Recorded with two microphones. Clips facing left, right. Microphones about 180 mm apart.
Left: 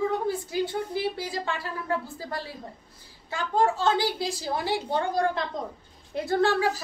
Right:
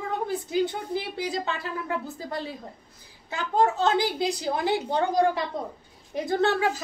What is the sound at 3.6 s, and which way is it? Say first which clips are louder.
A woman's voice: right 1 dB; 20° right (ahead or behind).